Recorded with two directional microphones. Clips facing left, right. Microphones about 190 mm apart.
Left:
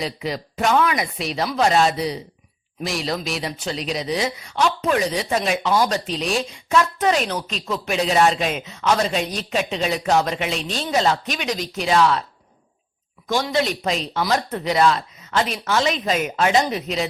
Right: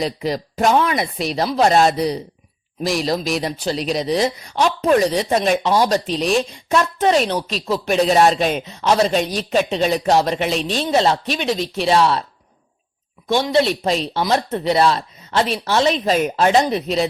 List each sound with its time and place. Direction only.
0.0 s speech: 40° right (ahead or behind)
13.2 s speech: 30° right (ahead or behind)